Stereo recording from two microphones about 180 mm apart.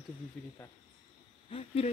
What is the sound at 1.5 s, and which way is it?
Speech, 35° left (ahead or behind).